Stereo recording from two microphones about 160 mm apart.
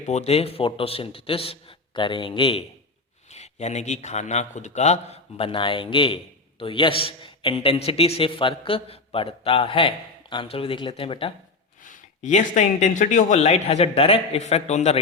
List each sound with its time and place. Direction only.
0.0 s a man's voice: 45° left (ahead or behind)
11.8 s speech: 50° left (ahead or behind)